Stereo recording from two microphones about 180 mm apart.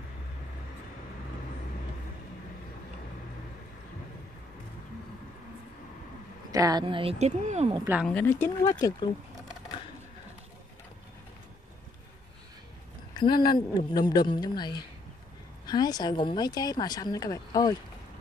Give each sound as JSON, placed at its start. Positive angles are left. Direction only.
{"t": 6.5, "sound": "speech", "side_deg": -20}
{"t": 7.7, "sound": "a woman's voice", "side_deg": -10}
{"t": 8.1, "sound": "speech", "side_deg": 10}
{"t": 13.1, "sound": "speech", "side_deg": 25}